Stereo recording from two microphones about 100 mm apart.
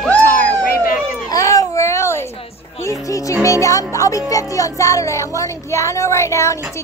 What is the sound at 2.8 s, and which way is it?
Speech, 35° left (ahead or behind).